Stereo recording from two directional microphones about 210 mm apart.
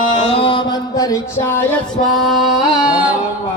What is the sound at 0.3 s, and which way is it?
Music, 20° left (ahead or behind).